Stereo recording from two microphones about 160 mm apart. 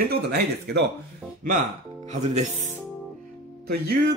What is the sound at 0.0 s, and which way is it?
Speech, 75° right (ahead or behind).